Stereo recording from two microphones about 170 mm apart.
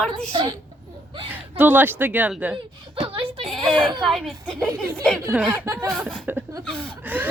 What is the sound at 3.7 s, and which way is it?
Speech, 30° right (ahead or behind).